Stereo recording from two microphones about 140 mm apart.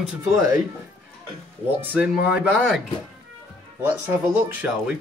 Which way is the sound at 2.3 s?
10° right (ahead or behind).